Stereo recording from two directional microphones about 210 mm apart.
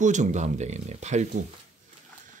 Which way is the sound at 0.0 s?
35° right (ahead or behind).